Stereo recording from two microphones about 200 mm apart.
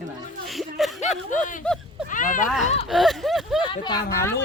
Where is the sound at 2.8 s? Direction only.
Centre (ahead or behind).